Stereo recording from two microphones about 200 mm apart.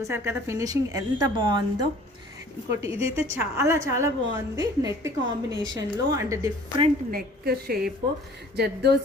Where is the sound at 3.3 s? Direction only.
15° right (ahead or behind).